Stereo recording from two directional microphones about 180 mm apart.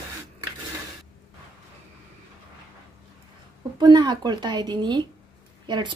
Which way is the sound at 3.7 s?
25° right (ahead or behind).